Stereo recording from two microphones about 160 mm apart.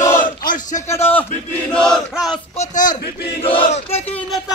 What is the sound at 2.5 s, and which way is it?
Speech, 55° left (ahead or behind).